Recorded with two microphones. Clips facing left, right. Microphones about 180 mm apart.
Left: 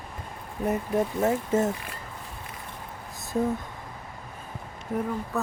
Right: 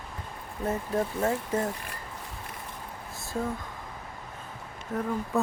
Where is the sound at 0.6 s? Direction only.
15° left (ahead or behind).